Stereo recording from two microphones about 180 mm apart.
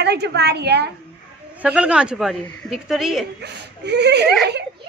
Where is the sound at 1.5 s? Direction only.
5° right (ahead or behind).